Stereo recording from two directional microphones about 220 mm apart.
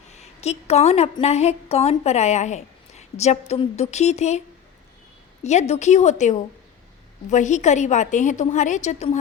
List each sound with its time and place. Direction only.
0.4 s a woman's voice: 30° left (ahead or behind)